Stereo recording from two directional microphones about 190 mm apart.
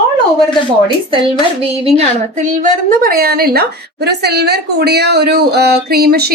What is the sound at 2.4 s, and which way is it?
A woman's voice, 40° right (ahead or behind).